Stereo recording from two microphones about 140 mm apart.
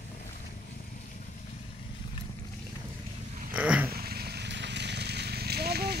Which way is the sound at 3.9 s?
90° right.